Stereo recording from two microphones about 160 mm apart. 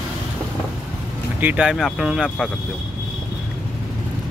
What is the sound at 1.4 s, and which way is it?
Speech, 10° right (ahead or behind).